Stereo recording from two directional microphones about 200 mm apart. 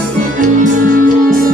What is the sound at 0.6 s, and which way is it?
Music, 40° right (ahead or behind).